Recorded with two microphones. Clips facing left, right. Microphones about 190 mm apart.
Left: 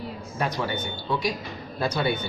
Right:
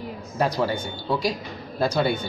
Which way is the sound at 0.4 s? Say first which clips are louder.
Right 5 dB; 35° right (ahead or behind).